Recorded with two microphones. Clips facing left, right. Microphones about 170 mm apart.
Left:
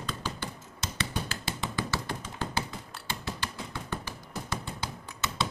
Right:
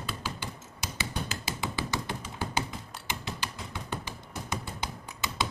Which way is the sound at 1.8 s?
20° right (ahead or behind).